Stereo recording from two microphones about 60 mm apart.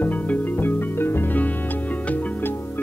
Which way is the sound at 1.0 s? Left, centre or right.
Left.